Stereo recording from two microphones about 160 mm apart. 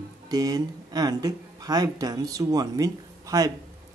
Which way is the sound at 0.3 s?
25° right (ahead or behind).